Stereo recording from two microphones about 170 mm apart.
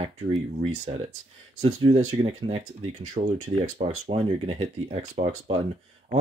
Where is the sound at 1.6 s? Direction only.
35° right (ahead or behind).